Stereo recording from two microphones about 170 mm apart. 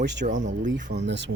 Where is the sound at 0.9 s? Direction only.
90° right.